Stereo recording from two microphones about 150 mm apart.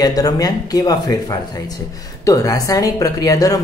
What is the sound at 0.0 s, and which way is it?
Speech, 25° left (ahead or behind).